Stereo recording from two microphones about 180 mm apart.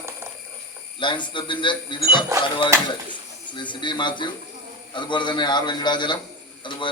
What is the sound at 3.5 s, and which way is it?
A man's voice, 25° left (ahead or behind).